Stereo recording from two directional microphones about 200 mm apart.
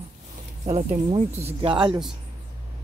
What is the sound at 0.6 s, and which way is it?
Speech, 30° right (ahead or behind).